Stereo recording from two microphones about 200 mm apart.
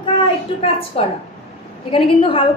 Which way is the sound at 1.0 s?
30° left (ahead or behind).